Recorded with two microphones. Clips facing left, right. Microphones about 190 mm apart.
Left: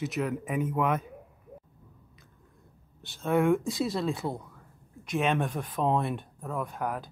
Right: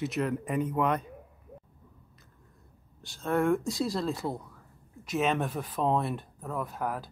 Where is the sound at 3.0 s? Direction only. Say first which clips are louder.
Left 2 dB; centre (ahead or behind).